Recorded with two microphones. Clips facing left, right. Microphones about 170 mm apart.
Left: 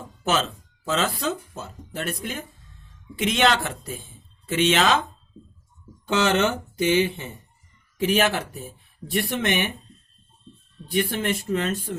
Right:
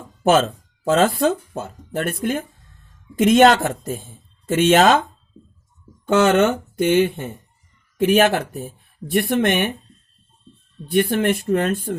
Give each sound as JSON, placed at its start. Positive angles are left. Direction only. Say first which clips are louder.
{"t": 0.2, "sound": "speech", "louder": "right 8 dB", "side_deg": -50}
{"t": 6.1, "sound": "speech", "louder": "right 6 dB", "side_deg": -55}
{"t": 10.8, "sound": "speech", "louder": "right 6 dB", "side_deg": -55}